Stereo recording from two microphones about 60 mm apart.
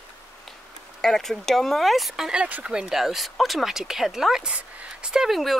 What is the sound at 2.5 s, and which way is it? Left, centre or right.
Speech, centre.